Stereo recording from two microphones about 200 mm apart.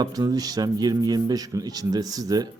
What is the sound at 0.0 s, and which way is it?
A man's voice, 20° right (ahead or behind).